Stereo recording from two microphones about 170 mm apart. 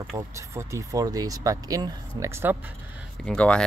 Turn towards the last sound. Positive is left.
turn(degrees=5)  # may be behind; listen again after turning